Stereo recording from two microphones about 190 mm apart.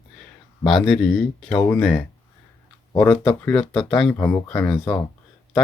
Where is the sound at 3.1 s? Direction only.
5° left (ahead or behind).